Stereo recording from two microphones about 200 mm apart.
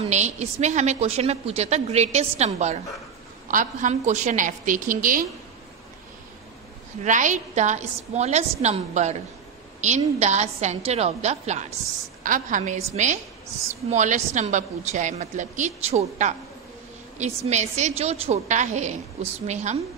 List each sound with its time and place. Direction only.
0.0 s a woman's voice: 35° right (ahead or behind)
7.0 s a woman's voice: 40° right (ahead or behind)